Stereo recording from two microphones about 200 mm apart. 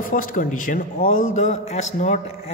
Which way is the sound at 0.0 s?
45° left (ahead or behind).